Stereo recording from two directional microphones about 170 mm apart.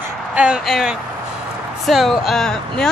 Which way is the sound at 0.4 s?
5° right (ahead or behind).